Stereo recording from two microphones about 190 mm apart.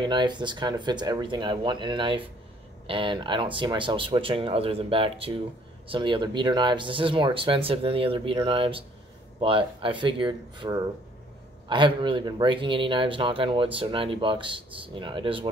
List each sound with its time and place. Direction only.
0.0 s speech: 25° right (ahead or behind)